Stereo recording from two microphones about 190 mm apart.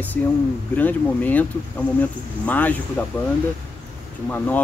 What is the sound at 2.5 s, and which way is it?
Speech, 10° left (ahead or behind).